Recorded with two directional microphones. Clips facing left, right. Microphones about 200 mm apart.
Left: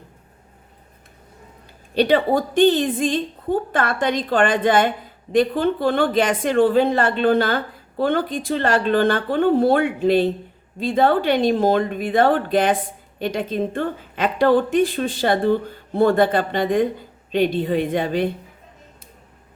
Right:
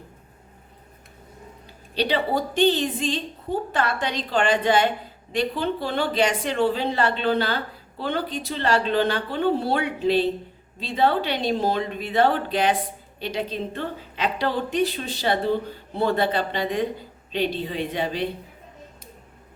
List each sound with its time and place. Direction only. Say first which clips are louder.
2.0 s speech: left 6 dB; 50° left (ahead or behind)